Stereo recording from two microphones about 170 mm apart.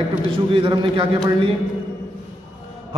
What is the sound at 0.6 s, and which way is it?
Speech, 30° right (ahead or behind).